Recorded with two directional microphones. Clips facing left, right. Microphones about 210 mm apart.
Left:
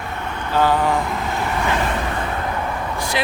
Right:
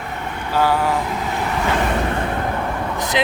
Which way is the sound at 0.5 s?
10° right (ahead or behind).